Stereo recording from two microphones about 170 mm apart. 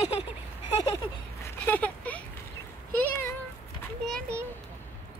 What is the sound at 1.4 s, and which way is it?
Speech, 10° left (ahead or behind).